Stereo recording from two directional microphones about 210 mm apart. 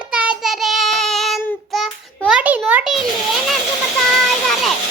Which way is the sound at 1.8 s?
5° right (ahead or behind).